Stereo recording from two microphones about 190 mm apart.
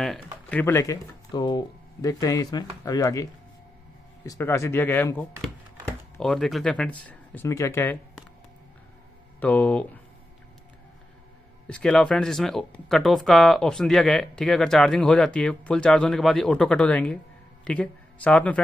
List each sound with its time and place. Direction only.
0.0 s speech: 5° left (ahead or behind)
9.4 s speech: 10° left (ahead or behind)
11.6 s speech: 5° left (ahead or behind)